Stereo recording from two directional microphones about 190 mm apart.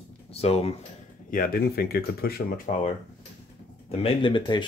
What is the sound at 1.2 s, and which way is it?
Speech, 50° left (ahead or behind).